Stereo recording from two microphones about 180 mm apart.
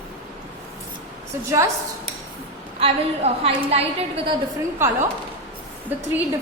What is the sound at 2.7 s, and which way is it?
A woman's voice, 35° right (ahead or behind).